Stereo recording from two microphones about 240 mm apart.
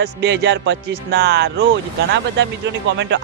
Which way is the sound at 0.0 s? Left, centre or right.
Right.